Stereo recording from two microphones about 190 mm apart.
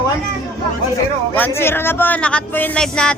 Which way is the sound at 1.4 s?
10° left (ahead or behind).